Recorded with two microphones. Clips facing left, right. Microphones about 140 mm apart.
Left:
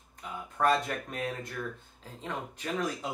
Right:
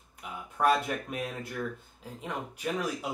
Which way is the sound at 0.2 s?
10° right (ahead or behind).